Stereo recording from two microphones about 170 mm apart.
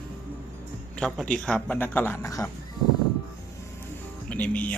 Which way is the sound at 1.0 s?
5° left (ahead or behind).